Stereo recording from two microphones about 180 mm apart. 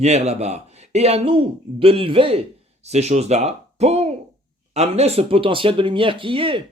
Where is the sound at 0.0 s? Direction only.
35° right (ahead or behind).